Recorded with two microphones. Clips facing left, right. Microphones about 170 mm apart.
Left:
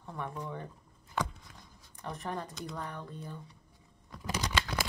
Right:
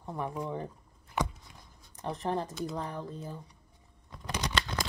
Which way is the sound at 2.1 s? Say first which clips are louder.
Right 6 dB; 30° right (ahead or behind).